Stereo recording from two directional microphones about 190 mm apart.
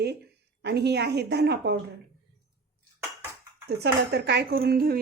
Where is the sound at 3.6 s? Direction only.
60° right (ahead or behind).